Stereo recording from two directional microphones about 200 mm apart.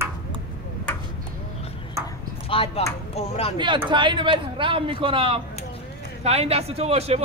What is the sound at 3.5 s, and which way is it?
A man's voice, 25° right (ahead or behind).